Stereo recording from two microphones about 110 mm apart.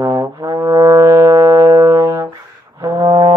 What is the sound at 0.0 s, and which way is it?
Brass instrument, 30° right (ahead or behind).